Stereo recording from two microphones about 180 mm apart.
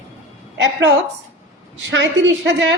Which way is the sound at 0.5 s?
80° right.